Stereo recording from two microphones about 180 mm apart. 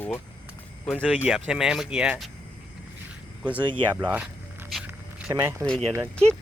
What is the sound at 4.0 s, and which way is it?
Speech, 10° right (ahead or behind).